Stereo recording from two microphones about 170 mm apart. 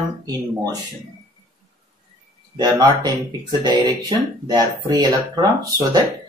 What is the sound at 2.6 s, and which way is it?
Speech, 25° right (ahead or behind).